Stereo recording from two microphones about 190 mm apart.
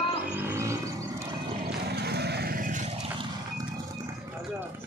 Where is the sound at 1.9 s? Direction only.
60° right (ahead or behind).